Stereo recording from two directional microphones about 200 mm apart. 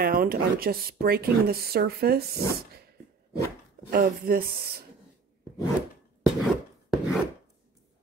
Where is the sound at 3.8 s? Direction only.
45° right (ahead or behind).